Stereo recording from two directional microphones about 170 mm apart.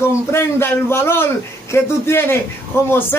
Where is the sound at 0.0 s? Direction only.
15° left (ahead or behind).